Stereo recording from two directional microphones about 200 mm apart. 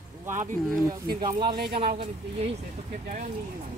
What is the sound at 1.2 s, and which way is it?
Speech, 20° right (ahead or behind).